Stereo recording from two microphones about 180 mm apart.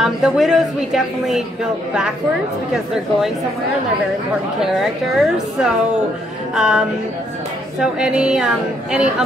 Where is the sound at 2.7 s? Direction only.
5° right (ahead or behind).